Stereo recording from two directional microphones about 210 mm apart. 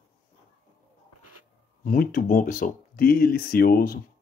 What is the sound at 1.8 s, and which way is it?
A man's voice, 40° left (ahead or behind).